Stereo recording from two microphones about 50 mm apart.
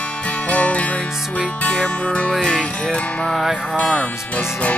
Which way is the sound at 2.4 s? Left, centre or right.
Centre.